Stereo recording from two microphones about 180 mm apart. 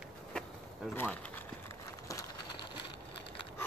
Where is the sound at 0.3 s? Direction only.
5° left (ahead or behind).